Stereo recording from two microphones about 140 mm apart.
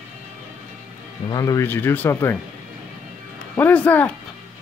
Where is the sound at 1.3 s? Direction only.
25° left (ahead or behind).